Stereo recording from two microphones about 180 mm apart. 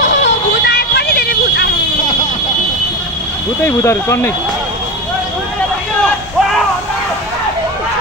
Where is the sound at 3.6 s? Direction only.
15° left (ahead or behind).